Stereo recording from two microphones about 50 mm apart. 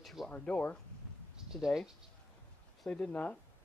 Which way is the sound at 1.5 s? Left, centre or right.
Centre.